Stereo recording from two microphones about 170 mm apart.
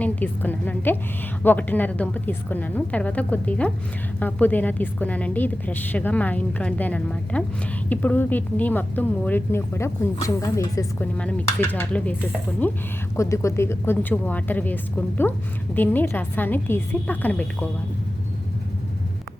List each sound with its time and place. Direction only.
0.0 s a woman's voice: 10° left (ahead or behind)
11.2 s a woman's voice: 10° left (ahead or behind)